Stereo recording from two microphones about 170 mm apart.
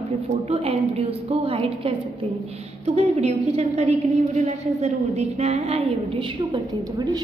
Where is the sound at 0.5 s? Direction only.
35° right (ahead or behind).